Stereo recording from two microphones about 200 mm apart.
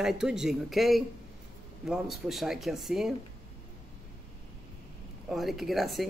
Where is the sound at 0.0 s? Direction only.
Centre (ahead or behind).